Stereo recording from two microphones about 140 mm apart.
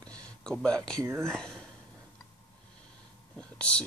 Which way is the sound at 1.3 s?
5° left (ahead or behind).